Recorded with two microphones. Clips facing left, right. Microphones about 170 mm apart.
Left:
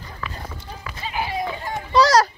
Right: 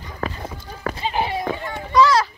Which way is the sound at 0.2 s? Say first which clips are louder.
Right 7 dB; 40° right (ahead or behind).